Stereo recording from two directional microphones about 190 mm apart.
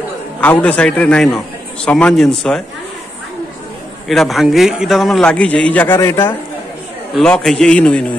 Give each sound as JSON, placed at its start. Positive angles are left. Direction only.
{"t": 0.4, "sound": "a man's voice", "side_deg": 5}
{"t": 4.1, "sound": "a man's voice", "side_deg": 0}